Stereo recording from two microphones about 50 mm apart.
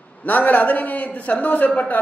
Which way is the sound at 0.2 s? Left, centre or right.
Left.